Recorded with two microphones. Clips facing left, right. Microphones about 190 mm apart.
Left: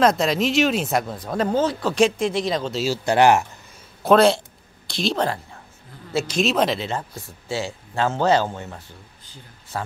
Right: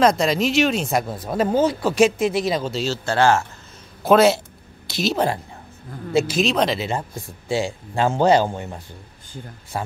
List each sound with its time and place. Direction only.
0.0 s speech: centre (ahead or behind)
2.8 s speech: 15° left (ahead or behind)
4.0 s a man's voice: 5° right (ahead or behind)
6.4 s speech: centre (ahead or behind)
6.8 s speech: 15° right (ahead or behind)